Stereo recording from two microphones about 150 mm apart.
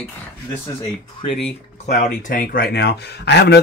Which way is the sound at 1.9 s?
70° left (ahead or behind).